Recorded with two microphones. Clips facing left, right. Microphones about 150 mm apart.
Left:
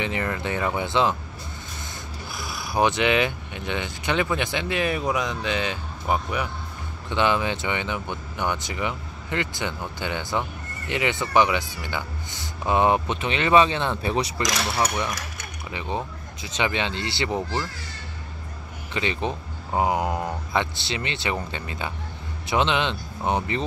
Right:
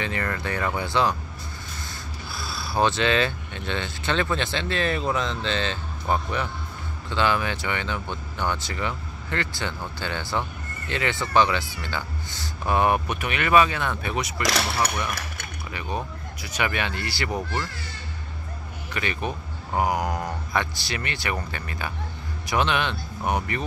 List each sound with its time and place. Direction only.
0.0 s speech: 20° left (ahead or behind)
2.3 s speech: 20° left (ahead or behind)
16.4 s speech: 20° left (ahead or behind)
18.9 s speech: 20° left (ahead or behind)